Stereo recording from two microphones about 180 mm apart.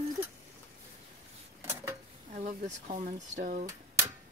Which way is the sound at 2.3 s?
40° right (ahead or behind).